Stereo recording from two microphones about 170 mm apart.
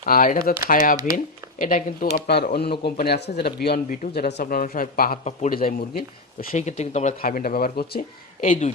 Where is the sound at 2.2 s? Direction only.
70° left (ahead or behind).